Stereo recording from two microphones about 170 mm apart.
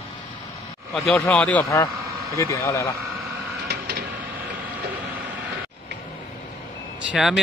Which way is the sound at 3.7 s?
70° right (ahead or behind).